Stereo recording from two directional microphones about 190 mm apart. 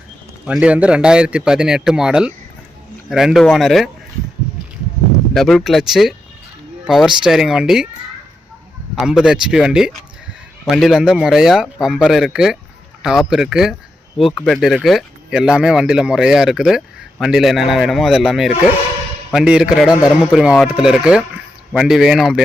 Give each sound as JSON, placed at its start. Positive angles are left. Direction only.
{"t": 0.4, "sound": "speech", "side_deg": -5}
{"t": 5.3, "sound": "speech", "side_deg": 0}
{"t": 9.0, "sound": "speech", "side_deg": -5}